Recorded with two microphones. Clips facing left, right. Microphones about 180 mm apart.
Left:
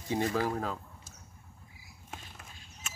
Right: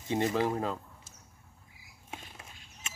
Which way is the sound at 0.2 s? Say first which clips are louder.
Right 2 dB; 20° right (ahead or behind).